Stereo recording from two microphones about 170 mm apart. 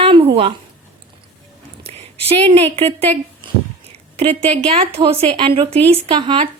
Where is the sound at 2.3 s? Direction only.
35° right (ahead or behind).